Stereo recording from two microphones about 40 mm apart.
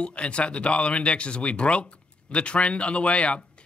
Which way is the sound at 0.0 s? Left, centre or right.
Left.